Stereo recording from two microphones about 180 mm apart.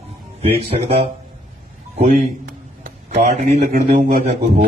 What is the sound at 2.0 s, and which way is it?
A man's voice, 50° right (ahead or behind).